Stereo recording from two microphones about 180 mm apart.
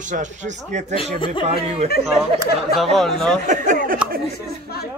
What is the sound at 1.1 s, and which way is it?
Speech, 30° left (ahead or behind).